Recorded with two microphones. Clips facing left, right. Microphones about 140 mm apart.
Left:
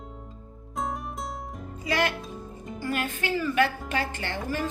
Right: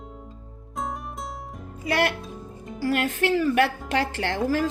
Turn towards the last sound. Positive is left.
turn(degrees=-90)